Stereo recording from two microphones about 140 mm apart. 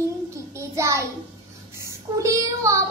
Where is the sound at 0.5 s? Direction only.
20° right (ahead or behind).